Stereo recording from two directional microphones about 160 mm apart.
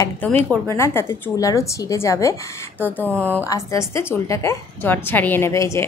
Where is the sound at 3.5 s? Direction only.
20° left (ahead or behind).